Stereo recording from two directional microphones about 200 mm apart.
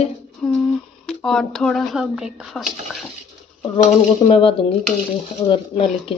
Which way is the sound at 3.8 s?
30° left (ahead or behind).